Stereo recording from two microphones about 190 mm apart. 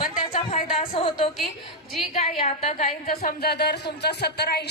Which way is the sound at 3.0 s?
45° left (ahead or behind).